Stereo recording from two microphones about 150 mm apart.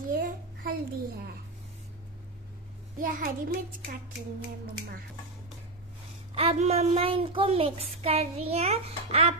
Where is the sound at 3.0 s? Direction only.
65° right (ahead or behind).